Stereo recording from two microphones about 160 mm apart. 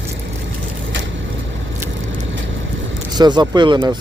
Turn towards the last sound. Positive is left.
turn(degrees=-30)  # may be behind; listen again after turning